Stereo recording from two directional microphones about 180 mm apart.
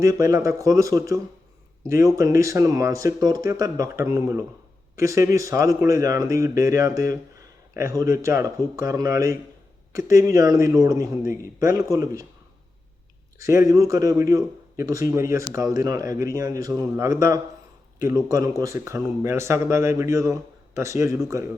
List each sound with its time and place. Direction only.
0.0 s a man's voice: 15° right (ahead or behind)
13.4 s a man's voice: 15° right (ahead or behind)